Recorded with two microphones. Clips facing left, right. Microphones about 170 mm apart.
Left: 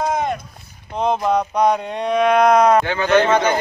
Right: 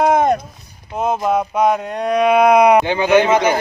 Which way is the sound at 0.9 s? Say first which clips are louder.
Right 1 dB; 5° right (ahead or behind).